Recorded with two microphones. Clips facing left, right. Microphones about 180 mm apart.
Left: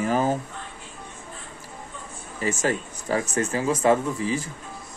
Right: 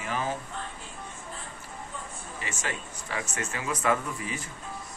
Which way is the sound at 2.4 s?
40° left (ahead or behind).